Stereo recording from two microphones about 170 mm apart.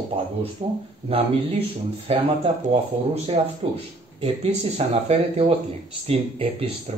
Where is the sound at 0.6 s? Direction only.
40° right (ahead or behind).